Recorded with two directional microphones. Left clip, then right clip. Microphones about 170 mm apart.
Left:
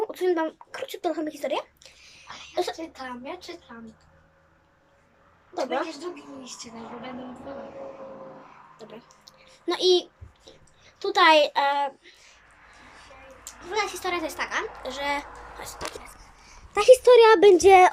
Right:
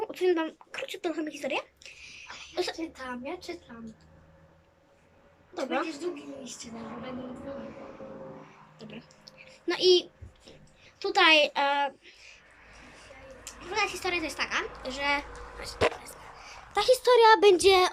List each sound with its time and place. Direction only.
0.0 s speech: centre (ahead or behind)
5.5 s a child's voice: centre (ahead or behind)
8.8 s a sound: centre (ahead or behind)
11.0 s a child's voice: centre (ahead or behind)
13.4 s a child's voice: centre (ahead or behind)
16.7 s speech: 10° left (ahead or behind)
17.4 s a woman's voice: 15° right (ahead or behind)